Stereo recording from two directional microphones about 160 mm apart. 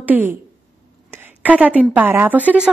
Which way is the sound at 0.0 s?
10° right (ahead or behind).